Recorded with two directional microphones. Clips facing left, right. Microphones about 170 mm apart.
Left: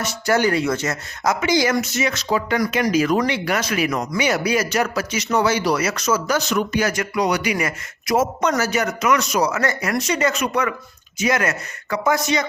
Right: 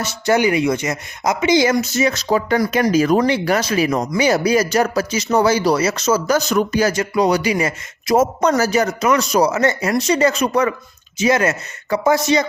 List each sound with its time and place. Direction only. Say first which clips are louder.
0.3 s speech: right 3 dB; 15° right (ahead or behind)
6.2 s speech: right 4 dB; 40° right (ahead or behind)
8.1 s speech: right 4 dB; 40° right (ahead or behind)